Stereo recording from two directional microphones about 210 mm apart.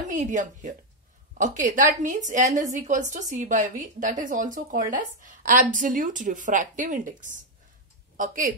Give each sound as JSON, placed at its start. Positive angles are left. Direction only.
{"t": 0.1, "sound": "speech", "side_deg": -35}